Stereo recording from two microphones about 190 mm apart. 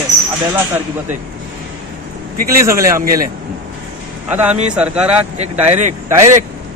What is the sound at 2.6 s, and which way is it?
Speech, 15° right (ahead or behind).